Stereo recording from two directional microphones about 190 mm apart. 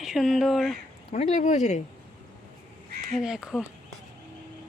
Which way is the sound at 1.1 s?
35° left (ahead or behind).